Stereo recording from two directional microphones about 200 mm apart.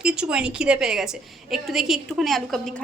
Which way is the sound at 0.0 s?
5° right (ahead or behind).